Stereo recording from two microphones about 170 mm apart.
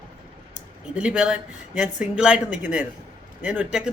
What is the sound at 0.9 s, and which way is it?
Speech, 5° right (ahead or behind).